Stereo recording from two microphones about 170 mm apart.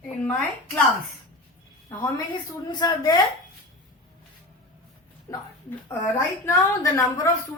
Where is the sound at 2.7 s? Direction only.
25° left (ahead or behind).